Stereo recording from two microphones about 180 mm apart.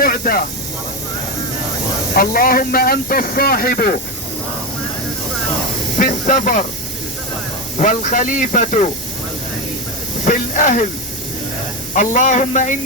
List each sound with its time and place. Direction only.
0.0 s speech: 55° left (ahead or behind)
2.1 s speech: 50° left (ahead or behind)
6.0 s speech: 45° left (ahead or behind)
7.8 s speech: 45° left (ahead or behind)
10.2 s speech: 45° left (ahead or behind)
11.9 s speech: 40° left (ahead or behind)